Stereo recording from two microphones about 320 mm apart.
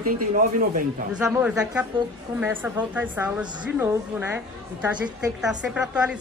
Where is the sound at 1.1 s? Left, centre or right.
Centre.